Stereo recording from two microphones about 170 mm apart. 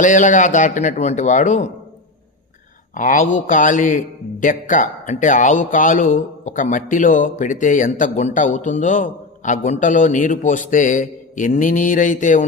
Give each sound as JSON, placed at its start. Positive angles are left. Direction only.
{"t": 0.0, "sound": "a man's voice", "side_deg": 50}
{"t": 2.9, "sound": "a man's voice", "side_deg": 50}